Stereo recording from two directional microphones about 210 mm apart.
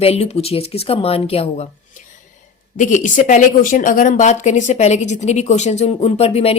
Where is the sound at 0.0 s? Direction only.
30° left (ahead or behind).